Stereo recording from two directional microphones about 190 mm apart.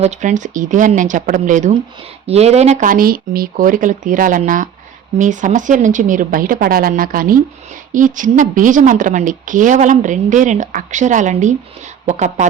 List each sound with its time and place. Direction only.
0.0 s a woman's voice: 40° right (ahead or behind)